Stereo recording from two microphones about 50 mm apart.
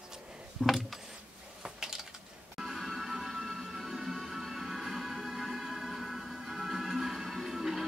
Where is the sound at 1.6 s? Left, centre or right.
Centre.